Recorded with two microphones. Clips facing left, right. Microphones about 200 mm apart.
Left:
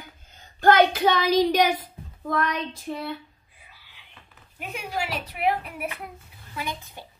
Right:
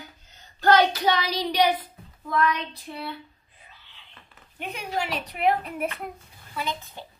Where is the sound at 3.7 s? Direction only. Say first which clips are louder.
Even; 10° left (ahead or behind).